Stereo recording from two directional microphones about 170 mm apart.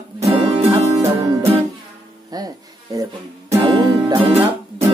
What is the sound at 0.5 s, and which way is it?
Music, 25° right (ahead or behind).